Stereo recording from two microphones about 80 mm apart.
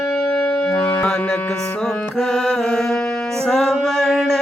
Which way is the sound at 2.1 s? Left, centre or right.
Centre.